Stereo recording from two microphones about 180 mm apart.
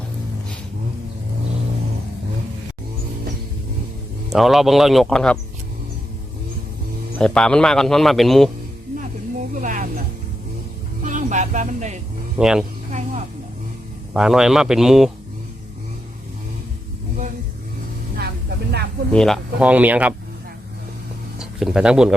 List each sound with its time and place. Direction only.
4.3 s a man's voice: centre (ahead or behind)
7.2 s a man's voice: 5° left (ahead or behind)
9.6 s speech: 45° right (ahead or behind)
11.0 s speech: 45° right (ahead or behind)
12.4 s a man's voice: 5° right (ahead or behind)
12.9 s a sound: 40° right (ahead or behind)
14.1 s a man's voice: 5° right (ahead or behind)
19.1 s speech: centre (ahead or behind)
21.3 s speech: 5° right (ahead or behind)